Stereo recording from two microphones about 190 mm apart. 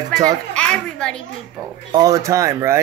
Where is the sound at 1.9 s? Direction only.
20° right (ahead or behind).